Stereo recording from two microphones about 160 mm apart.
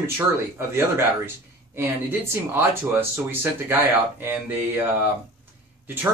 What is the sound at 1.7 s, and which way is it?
Speech, 15° right (ahead or behind).